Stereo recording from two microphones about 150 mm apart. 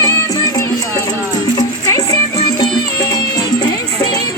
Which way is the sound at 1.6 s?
25° left (ahead or behind).